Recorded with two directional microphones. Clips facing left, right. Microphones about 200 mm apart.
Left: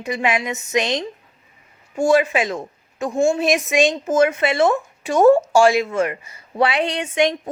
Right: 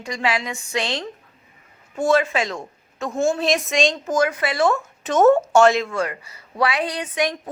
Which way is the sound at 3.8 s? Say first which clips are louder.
Left 4 dB; 20° left (ahead or behind).